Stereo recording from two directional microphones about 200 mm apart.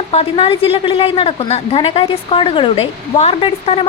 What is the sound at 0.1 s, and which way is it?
A woman's voice, 30° left (ahead or behind).